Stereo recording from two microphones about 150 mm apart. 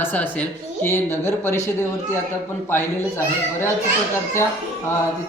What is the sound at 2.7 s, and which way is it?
A man's voice, 15° left (ahead or behind).